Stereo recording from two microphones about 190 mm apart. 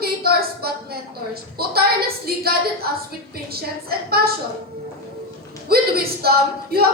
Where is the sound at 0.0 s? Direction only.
55° right (ahead or behind).